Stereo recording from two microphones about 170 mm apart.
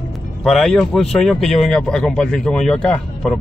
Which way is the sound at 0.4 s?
Centre (ahead or behind).